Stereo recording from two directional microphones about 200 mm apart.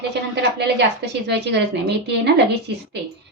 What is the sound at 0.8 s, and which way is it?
A woman's voice, 60° right (ahead or behind).